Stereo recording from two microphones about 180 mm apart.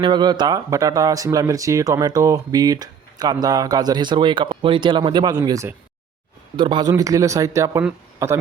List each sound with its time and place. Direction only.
0.0 s speech: 25° right (ahead or behind)